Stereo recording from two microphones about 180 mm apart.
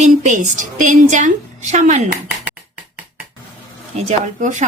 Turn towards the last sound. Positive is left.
turn(degrees=-45)  # may be behind; listen again after turning